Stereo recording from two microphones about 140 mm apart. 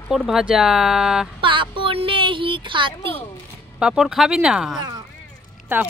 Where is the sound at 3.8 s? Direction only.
5° right (ahead or behind).